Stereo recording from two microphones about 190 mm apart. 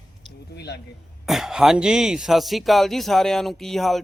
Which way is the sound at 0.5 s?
60° left (ahead or behind).